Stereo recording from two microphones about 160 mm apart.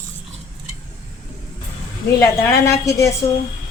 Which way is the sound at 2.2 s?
20° left (ahead or behind).